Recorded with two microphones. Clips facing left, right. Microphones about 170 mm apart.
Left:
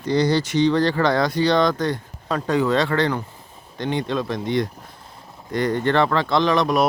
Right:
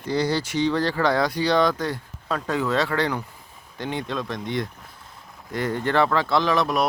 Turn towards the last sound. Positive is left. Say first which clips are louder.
# left 3 dB
turn(degrees=0)  # may be behind; listen again after turning